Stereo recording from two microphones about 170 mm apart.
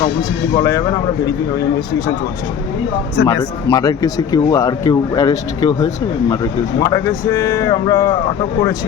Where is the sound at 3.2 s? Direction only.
90° left.